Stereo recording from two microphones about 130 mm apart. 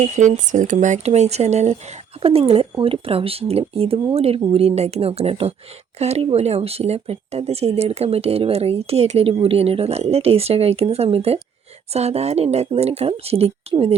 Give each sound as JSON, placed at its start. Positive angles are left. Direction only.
{"t": 0.0, "sound": "speech", "side_deg": -70}
{"t": 2.2, "sound": "speech", "side_deg": -45}